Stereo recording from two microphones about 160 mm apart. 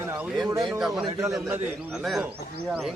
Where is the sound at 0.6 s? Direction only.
Centre (ahead or behind).